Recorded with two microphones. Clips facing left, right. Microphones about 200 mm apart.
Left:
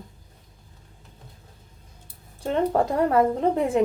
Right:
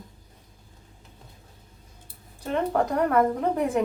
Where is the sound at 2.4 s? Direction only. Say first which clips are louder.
Left 3 dB; 30° left (ahead or behind).